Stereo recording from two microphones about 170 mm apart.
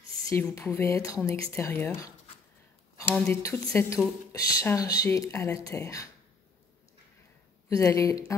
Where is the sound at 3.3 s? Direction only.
20° left (ahead or behind).